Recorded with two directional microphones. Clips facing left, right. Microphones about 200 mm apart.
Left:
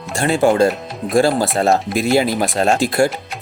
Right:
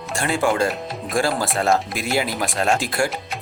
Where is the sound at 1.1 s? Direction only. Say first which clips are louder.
Left 7 dB; 25° left (ahead or behind).